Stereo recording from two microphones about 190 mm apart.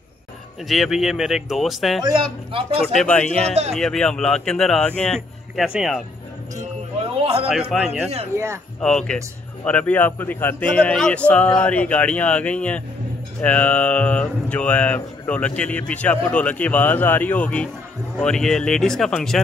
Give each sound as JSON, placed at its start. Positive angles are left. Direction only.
{"t": 0.7, "sound": "speech", "side_deg": 0}
{"t": 2.0, "sound": "speech", "side_deg": -25}
{"t": 3.0, "sound": "speech", "side_deg": 5}
{"t": 7.2, "sound": "a sound", "side_deg": -30}
{"t": 7.4, "sound": "speech", "side_deg": 0}
{"t": 8.8, "sound": "speech", "side_deg": 5}